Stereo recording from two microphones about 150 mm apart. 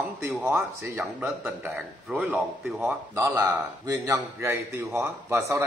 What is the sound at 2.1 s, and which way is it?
A man's voice, 10° right (ahead or behind).